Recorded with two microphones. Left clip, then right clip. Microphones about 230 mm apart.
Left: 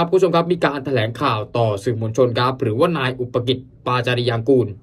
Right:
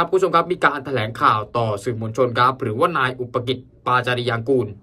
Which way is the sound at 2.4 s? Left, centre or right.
Centre.